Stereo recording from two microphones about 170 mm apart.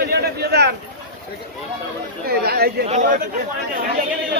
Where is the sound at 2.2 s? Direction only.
65° right (ahead or behind).